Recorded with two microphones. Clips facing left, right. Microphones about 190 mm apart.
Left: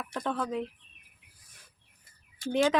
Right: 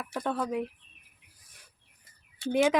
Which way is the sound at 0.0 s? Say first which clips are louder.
Right 1 dB; 10° right (ahead or behind).